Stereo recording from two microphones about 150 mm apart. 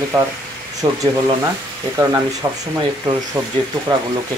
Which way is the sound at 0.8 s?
25° right (ahead or behind).